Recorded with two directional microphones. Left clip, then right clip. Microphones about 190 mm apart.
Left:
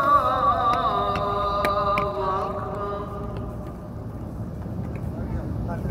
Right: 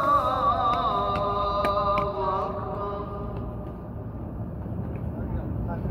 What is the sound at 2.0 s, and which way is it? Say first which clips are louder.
Mantra: left 2 dB; 25° left (ahead or behind).